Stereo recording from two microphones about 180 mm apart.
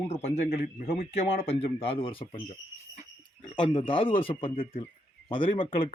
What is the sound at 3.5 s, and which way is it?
Speech, 25° left (ahead or behind).